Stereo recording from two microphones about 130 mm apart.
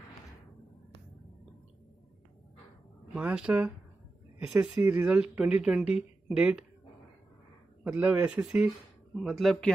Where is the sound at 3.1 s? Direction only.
10° right (ahead or behind).